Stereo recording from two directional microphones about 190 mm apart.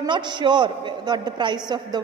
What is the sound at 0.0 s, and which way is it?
A woman's voice, 25° right (ahead or behind).